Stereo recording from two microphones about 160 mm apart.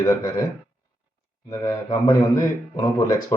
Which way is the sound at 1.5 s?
25° left (ahead or behind).